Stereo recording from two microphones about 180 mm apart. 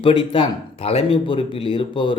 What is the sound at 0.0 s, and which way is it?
Speech, 30° left (ahead or behind).